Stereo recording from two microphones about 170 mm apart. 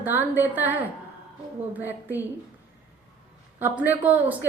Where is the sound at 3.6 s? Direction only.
10° right (ahead or behind).